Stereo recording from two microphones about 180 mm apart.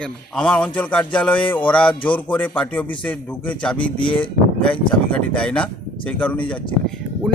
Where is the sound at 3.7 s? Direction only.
30° left (ahead or behind).